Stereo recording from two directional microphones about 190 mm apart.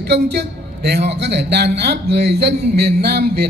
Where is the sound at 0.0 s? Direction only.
60° right (ahead or behind).